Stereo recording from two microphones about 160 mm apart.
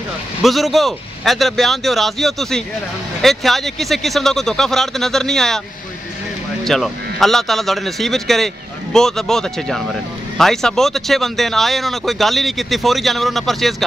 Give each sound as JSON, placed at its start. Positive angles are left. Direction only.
{"t": 0.4, "sound": "speech", "side_deg": 0}
{"t": 6.6, "sound": "speech", "side_deg": 0}